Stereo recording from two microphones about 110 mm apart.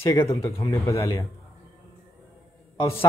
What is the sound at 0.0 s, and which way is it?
Speech, 25° left (ahead or behind).